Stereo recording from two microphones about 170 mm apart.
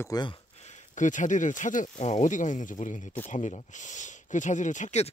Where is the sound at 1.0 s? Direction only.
50° left (ahead or behind).